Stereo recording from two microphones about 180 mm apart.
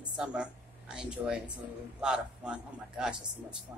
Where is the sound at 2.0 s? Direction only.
5° right (ahead or behind).